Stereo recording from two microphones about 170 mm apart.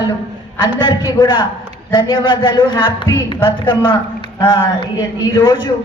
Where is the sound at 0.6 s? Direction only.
25° left (ahead or behind).